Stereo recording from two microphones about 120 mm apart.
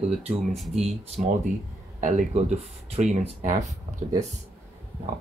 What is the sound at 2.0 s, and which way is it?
Speech, 90° right.